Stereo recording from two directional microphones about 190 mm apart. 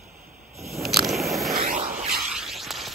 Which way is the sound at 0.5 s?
Centre (ahead or behind).